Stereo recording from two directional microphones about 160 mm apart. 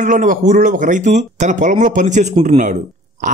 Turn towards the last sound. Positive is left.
turn(degrees=-55)  # may be behind; listen again after turning